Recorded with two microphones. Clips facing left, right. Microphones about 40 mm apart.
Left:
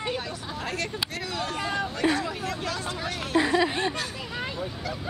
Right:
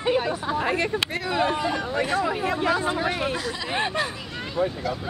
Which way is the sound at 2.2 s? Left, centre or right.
Right.